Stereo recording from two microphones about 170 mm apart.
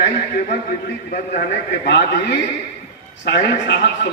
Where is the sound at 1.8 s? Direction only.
85° left.